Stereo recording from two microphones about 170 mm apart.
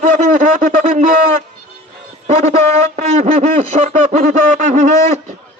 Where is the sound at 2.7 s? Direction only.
40° right (ahead or behind).